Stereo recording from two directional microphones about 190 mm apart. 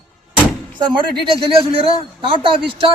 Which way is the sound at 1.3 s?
30° right (ahead or behind).